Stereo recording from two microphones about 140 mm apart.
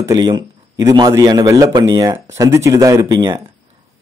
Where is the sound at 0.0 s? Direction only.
30° right (ahead or behind).